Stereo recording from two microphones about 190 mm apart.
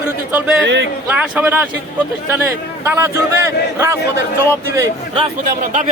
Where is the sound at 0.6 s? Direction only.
70° right (ahead or behind).